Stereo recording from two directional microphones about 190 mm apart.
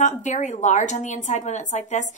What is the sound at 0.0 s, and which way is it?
A woman's voice, 40° left (ahead or behind).